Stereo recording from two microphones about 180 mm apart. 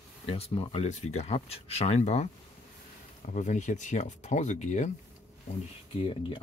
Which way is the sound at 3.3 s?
45° left (ahead or behind).